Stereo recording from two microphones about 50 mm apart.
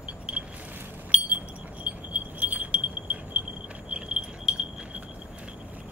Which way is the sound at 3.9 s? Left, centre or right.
Centre.